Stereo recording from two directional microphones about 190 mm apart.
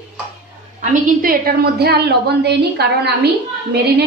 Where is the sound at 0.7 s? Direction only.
50° right (ahead or behind).